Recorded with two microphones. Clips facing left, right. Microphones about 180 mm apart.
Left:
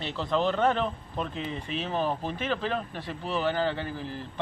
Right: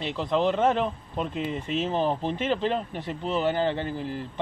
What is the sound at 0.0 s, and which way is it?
Speech, 15° right (ahead or behind).